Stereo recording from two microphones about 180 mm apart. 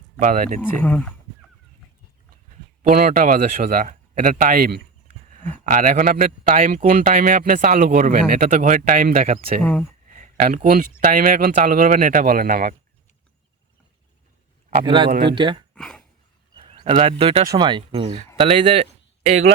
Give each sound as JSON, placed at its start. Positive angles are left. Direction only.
{"t": 0.2, "sound": "a man's voice", "side_deg": -50}
{"t": 0.6, "sound": "speech", "side_deg": 10}
{"t": 2.8, "sound": "a man's voice", "side_deg": -55}
{"t": 10.1, "sound": "a sound", "side_deg": -45}
{"t": 11.0, "sound": "a man's voice", "side_deg": -50}
{"t": 14.8, "sound": "speech", "side_deg": -25}
{"t": 15.7, "sound": "a sound", "side_deg": 5}
{"t": 16.6, "sound": "speech", "side_deg": -30}